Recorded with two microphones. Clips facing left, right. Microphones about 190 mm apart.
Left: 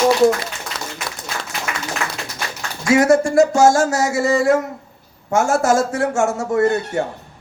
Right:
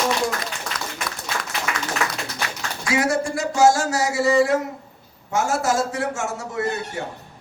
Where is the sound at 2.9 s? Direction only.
45° left (ahead or behind).